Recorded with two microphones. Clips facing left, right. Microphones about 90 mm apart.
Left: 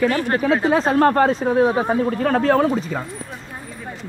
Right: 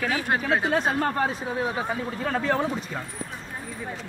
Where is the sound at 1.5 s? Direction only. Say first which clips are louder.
Left 10 dB; 40° left (ahead or behind).